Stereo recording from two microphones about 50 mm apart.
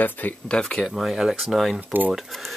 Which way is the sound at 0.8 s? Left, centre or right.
Centre.